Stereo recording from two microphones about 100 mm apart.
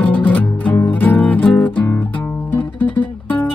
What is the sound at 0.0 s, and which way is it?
Music, 15° left (ahead or behind).